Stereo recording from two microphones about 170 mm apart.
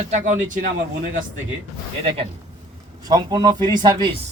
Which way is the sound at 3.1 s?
25° right (ahead or behind).